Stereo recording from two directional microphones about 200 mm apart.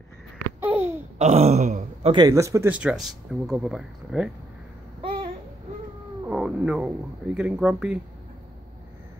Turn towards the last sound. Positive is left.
turn(degrees=-5)  # may be behind; listen again after turning